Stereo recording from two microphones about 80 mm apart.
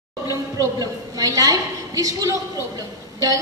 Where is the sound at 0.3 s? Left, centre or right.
Right.